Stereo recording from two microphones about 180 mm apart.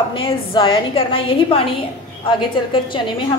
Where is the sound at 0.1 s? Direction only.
30° left (ahead or behind).